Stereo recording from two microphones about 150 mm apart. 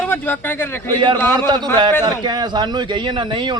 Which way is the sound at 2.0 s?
25° right (ahead or behind).